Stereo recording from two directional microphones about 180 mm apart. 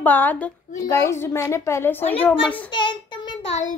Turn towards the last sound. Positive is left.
turn(degrees=25)  # may be behind; listen again after turning